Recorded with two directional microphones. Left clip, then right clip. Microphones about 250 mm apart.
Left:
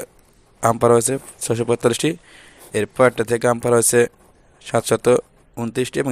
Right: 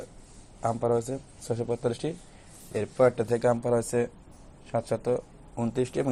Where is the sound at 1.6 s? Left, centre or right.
Left.